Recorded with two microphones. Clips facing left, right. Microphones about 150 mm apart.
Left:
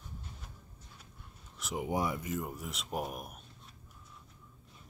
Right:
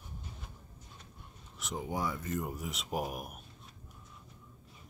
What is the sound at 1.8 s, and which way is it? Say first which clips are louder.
Speech: left 3 dB; 20° left (ahead or behind).